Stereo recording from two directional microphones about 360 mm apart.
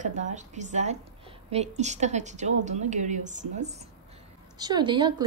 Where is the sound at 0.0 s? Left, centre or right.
Centre.